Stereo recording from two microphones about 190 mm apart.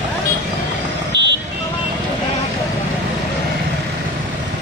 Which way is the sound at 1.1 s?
65° right (ahead or behind).